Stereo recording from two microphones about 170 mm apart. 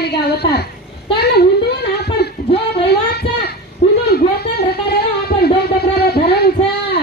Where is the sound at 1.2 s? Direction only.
70° left (ahead or behind).